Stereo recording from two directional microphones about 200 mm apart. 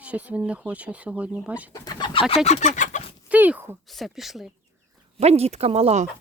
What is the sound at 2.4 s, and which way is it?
Chicken, 35° left (ahead or behind).